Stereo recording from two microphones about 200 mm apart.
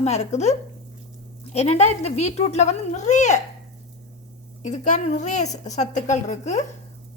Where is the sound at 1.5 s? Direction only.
35° left (ahead or behind).